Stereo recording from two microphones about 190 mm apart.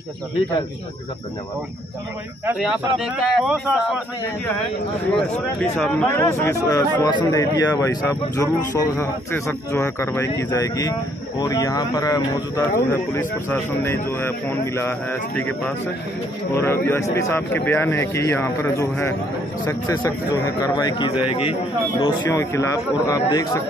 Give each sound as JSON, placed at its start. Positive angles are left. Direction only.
{"t": 2.6, "sound": "speech", "side_deg": 0}
{"t": 5.8, "sound": "a man's voice", "side_deg": 5}
{"t": 22.0, "sound": "speech", "side_deg": 15}